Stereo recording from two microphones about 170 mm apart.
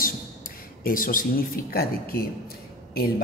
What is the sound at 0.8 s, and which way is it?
A man's voice, 55° left (ahead or behind).